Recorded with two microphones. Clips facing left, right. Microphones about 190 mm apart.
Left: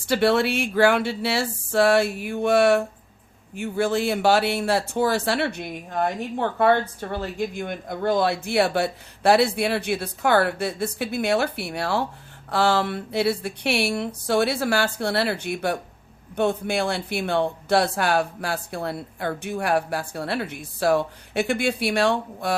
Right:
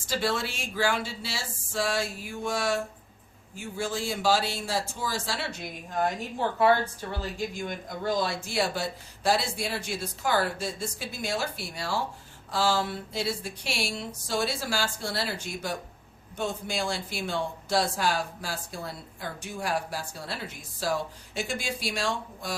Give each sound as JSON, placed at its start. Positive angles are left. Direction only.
{"t": 0.1, "sound": "speech", "side_deg": 65}